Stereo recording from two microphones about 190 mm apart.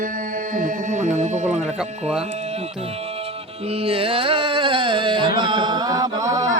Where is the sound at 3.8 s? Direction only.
30° right (ahead or behind).